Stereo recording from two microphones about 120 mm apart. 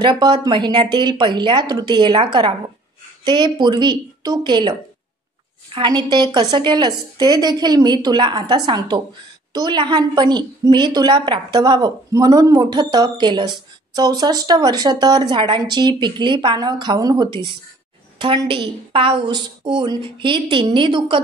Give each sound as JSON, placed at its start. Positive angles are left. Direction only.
{"t": 0.0, "sound": "a woman's voice", "side_deg": -40}